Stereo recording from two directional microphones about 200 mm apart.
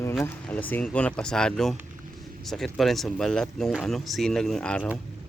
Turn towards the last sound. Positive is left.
turn(degrees=5)  # may be behind; listen again after turning